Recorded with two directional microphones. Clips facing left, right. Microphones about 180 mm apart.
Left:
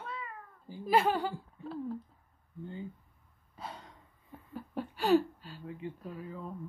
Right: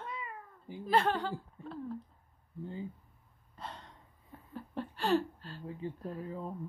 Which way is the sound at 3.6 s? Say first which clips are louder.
Left 1 dB; 5° left (ahead or behind).